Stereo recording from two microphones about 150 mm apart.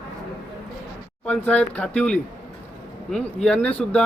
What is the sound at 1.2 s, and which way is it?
Speech, 10° left (ahead or behind).